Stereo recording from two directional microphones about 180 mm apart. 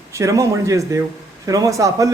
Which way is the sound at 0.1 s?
15° right (ahead or behind).